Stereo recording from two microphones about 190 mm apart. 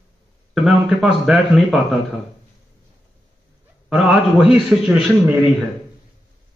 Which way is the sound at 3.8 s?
5° right (ahead or behind).